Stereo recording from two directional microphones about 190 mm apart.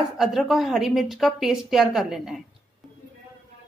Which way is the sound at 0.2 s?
Centre (ahead or behind).